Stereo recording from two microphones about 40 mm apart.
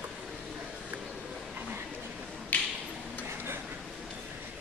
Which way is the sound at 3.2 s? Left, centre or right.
Right.